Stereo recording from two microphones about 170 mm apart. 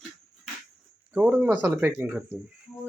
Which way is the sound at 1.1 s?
10° right (ahead or behind).